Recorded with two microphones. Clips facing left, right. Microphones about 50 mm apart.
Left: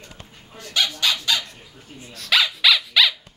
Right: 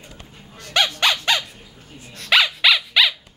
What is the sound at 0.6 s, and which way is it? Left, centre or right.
Dog, right.